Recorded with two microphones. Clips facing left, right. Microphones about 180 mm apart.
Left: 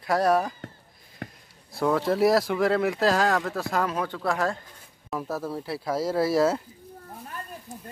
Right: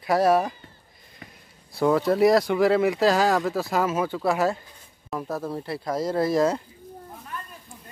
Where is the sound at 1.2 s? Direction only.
70° left (ahead or behind).